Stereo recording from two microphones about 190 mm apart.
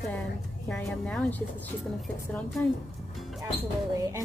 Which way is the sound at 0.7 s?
5° left (ahead or behind).